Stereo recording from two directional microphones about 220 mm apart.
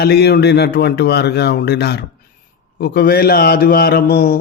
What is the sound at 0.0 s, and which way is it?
A man's voice, 45° left (ahead or behind).